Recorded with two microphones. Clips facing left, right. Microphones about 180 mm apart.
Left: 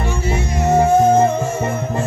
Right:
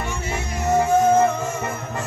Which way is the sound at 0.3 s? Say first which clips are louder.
Left 5 dB; 35° left (ahead or behind).